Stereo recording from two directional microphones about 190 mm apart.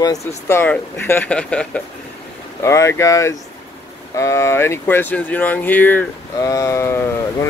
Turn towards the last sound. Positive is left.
turn(degrees=15)  # may be behind; listen again after turning